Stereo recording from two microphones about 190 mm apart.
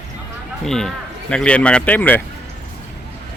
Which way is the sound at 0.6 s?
Centre (ahead or behind).